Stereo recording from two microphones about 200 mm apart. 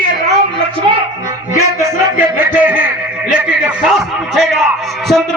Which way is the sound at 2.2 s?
10° right (ahead or behind).